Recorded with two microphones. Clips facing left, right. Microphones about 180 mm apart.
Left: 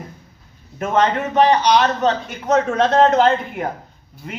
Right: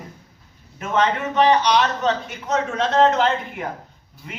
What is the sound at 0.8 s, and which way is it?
A man's voice, 45° left (ahead or behind).